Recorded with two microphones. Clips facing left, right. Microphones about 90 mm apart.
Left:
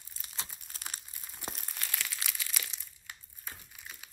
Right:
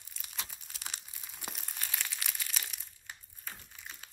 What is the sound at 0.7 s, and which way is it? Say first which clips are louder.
Crumpling: left 1 dB; 40° left (ahead or behind).